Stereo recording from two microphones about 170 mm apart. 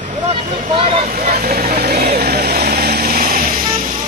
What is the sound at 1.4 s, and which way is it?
Vehicle, 60° right (ahead or behind).